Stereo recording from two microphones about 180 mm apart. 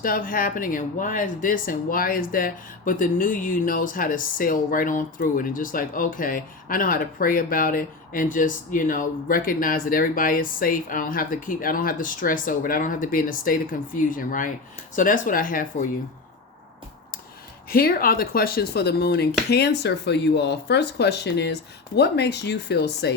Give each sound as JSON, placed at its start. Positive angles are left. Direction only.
{"t": 0.0, "sound": "speech", "side_deg": 50}
{"t": 17.7, "sound": "speech", "side_deg": 55}